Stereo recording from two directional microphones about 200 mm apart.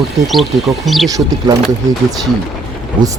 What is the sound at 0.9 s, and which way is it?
Speech, centre (ahead or behind).